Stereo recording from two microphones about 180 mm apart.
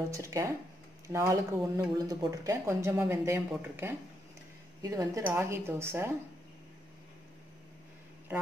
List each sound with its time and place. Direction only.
0.1 s speech: 15° right (ahead or behind)